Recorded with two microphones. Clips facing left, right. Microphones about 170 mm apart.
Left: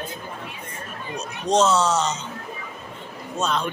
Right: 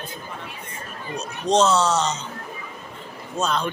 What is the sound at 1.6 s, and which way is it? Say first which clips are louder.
Speech: even; 5° left (ahead or behind).